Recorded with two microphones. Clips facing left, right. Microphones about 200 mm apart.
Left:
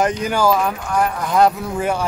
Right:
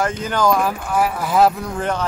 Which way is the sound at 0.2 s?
10° left (ahead or behind).